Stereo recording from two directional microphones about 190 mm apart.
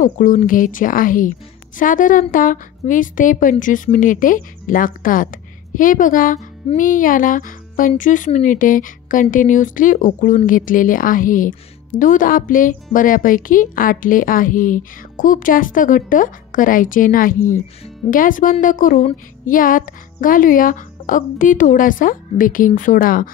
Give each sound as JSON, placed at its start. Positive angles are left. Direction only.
{"t": 0.0, "sound": "speech", "side_deg": 45}